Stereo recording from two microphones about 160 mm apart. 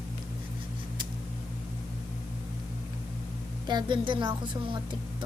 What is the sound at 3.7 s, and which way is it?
A woman's voice, 30° right (ahead or behind).